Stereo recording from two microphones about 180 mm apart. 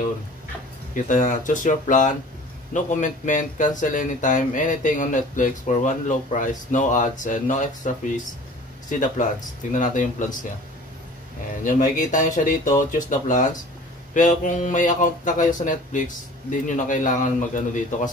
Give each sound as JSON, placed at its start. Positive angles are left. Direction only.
{"t": 0.9, "sound": "speech", "side_deg": 45}
{"t": 9.7, "sound": "speech", "side_deg": 45}
{"t": 11.6, "sound": "speech", "side_deg": 45}